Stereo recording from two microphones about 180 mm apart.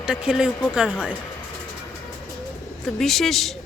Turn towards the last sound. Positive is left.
turn(degrees=0)  # may be behind; listen again after turning